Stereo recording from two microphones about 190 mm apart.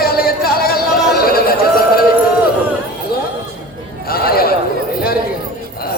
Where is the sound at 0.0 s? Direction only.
50° left (ahead or behind).